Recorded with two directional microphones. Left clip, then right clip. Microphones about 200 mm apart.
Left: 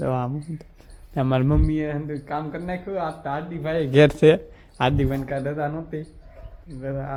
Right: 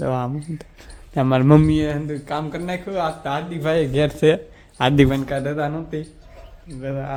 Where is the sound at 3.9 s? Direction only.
20° left (ahead or behind).